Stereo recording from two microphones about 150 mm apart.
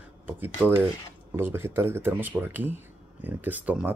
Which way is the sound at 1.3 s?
15° right (ahead or behind).